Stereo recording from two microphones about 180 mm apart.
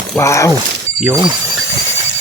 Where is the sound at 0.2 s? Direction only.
15° left (ahead or behind).